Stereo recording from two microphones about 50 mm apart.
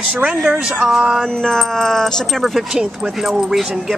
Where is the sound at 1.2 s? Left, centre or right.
Centre.